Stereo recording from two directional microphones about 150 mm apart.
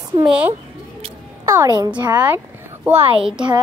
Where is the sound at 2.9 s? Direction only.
40° right (ahead or behind).